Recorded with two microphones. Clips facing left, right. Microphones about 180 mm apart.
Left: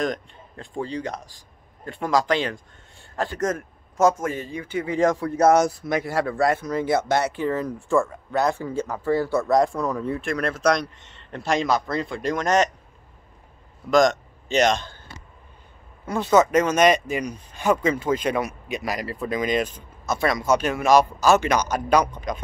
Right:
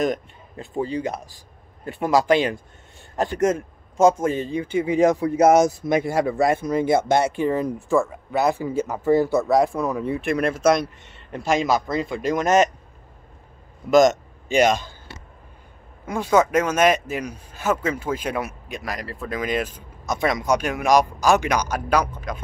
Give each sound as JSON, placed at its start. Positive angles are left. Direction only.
{"t": 0.0, "sound": "a man's voice", "side_deg": -5}
{"t": 9.4, "sound": "speech", "side_deg": -5}
{"t": 13.8, "sound": "a man's voice", "side_deg": -5}
{"t": 16.1, "sound": "speech", "side_deg": -10}